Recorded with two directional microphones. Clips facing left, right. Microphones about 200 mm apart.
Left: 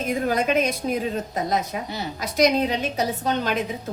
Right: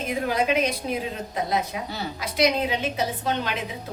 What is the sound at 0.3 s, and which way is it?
A woman's voice, 45° left (ahead or behind).